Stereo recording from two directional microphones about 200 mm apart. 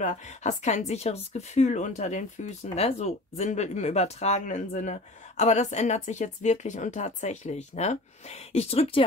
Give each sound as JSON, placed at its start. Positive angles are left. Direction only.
{"t": 0.0, "sound": "speech", "side_deg": 35}